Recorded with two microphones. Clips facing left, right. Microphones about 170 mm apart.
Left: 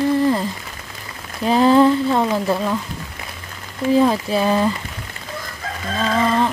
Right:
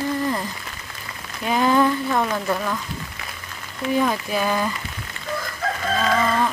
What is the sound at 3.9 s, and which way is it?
Speech, 30° left (ahead or behind).